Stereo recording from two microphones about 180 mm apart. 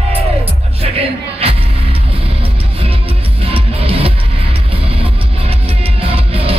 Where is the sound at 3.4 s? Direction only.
30° right (ahead or behind).